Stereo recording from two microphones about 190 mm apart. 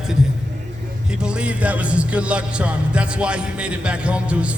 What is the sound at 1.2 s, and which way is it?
Speech, 5° right (ahead or behind).